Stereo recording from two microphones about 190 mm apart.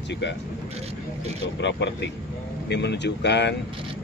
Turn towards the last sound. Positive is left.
turn(degrees=65)  # may be behind; listen again after turning